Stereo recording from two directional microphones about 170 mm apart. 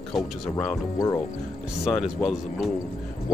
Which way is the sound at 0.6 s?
15° left (ahead or behind).